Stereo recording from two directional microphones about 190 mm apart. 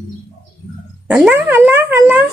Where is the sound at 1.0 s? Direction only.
10° right (ahead or behind).